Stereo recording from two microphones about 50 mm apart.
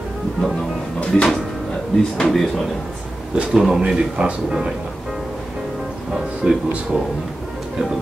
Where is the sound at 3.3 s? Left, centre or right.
Centre.